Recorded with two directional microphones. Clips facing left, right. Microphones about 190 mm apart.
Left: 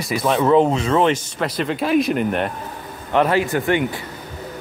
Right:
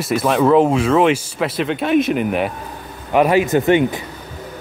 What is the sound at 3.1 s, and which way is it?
Speech, 15° right (ahead or behind).